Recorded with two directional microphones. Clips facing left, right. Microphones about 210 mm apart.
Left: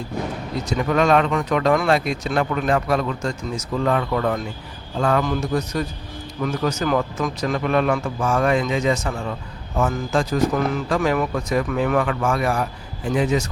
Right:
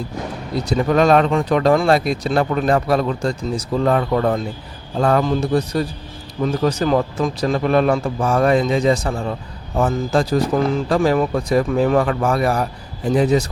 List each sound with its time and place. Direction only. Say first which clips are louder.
0.5 s speech: right 4 dB; 35° right (ahead or behind)